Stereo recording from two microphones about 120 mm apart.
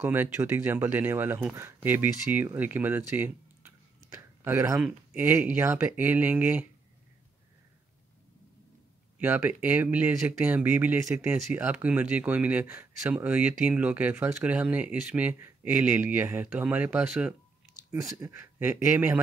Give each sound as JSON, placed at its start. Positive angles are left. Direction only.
{"t": 0.0, "sound": "speech", "side_deg": -15}
{"t": 9.2, "sound": "speech", "side_deg": -15}
{"t": 18.2, "sound": "speech", "side_deg": -20}